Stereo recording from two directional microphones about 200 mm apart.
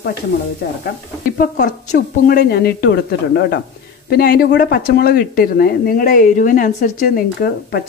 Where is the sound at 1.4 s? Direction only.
45° left (ahead or behind).